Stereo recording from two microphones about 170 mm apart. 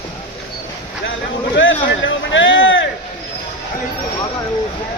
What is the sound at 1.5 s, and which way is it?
A man's voice, 90° left.